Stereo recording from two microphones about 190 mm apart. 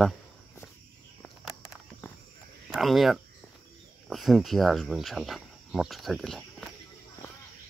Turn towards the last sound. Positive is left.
turn(degrees=0)  # may be behind; listen again after turning